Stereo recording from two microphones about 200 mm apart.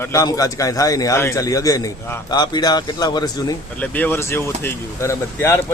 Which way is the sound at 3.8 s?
10° left (ahead or behind).